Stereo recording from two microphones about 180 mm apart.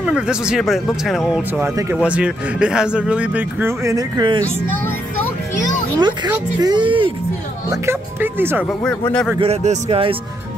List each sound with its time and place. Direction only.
0.0 s speech: 5° right (ahead or behind)
1.6 s speech: 15° right (ahead or behind)
5.9 s speech: 25° right (ahead or behind)
7.7 s speech: 15° right (ahead or behind)
8.6 s speech: 5° left (ahead or behind)
9.4 s speech: 35° right (ahead or behind)